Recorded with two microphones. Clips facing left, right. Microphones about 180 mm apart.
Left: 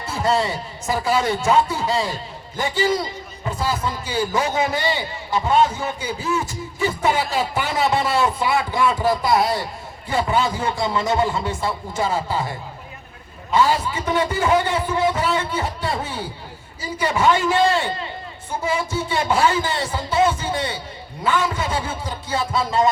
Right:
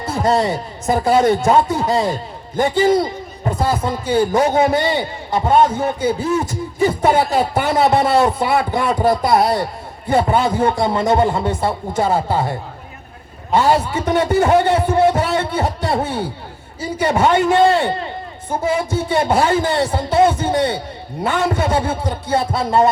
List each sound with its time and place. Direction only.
0.4 s a man's voice: 55° right (ahead or behind)
6.7 s a man's voice: 45° right (ahead or behind); by 22.9 s 60° right (ahead or behind)